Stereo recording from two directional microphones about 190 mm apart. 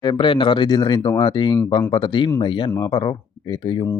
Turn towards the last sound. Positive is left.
turn(degrees=20)  # may be behind; listen again after turning